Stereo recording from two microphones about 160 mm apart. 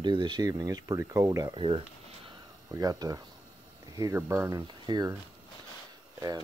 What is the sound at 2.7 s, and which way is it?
Speech, 25° right (ahead or behind).